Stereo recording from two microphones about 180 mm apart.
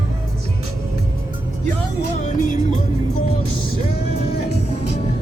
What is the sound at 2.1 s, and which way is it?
Music, 45° left (ahead or behind).